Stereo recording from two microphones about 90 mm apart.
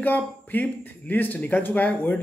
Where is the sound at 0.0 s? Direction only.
20° left (ahead or behind).